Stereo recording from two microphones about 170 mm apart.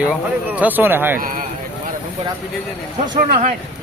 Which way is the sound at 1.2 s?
55° right (ahead or behind).